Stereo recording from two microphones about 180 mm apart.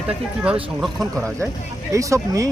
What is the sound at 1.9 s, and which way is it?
Speech, 15° right (ahead or behind).